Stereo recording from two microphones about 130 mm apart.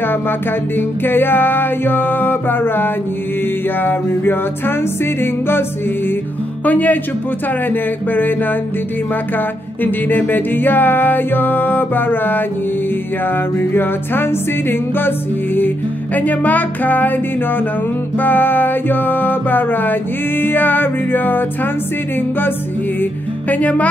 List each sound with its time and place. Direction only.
0.7 s music: 15° left (ahead or behind)
9.8 s music: 15° left (ahead or behind)
13.6 s music: 15° left (ahead or behind)
23.5 s music: 10° left (ahead or behind)